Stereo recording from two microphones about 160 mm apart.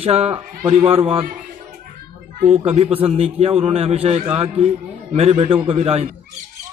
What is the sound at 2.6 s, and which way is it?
A man's voice, 40° right (ahead or behind).